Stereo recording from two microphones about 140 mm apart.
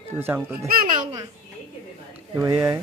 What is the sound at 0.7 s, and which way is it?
Babbling, 80° right.